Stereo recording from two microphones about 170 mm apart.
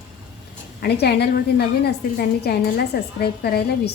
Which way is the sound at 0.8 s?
75° left (ahead or behind).